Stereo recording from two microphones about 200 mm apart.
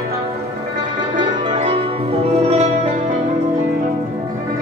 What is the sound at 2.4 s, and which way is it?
Music, 35° right (ahead or behind).